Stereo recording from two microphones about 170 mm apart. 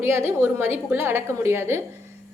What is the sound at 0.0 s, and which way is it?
A woman's voice, 15° right (ahead or behind).